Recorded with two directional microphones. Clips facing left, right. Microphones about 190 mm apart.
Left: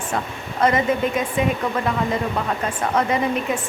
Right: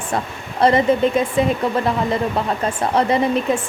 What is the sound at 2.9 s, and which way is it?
Speech, 35° right (ahead or behind).